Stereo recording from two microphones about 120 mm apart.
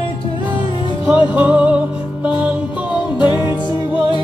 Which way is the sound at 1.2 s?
10° right (ahead or behind).